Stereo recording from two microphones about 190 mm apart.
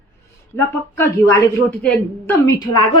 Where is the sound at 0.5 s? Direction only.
15° left (ahead or behind).